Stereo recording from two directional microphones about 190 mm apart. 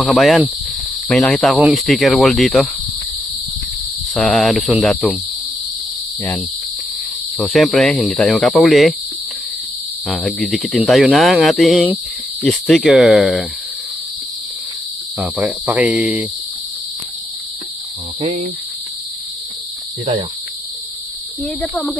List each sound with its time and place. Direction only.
0.0 s speech: centre (ahead or behind)
4.1 s speech: 5° left (ahead or behind)
7.3 s speech: centre (ahead or behind)
10.0 s speech: 5° left (ahead or behind)
15.1 s speech: centre (ahead or behind)
18.2 s cricket: 40° right (ahead or behind)
21.5 s speech: 5° left (ahead or behind)